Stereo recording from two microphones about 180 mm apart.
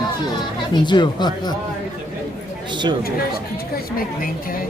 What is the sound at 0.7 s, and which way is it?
Speech, 25° left (ahead or behind).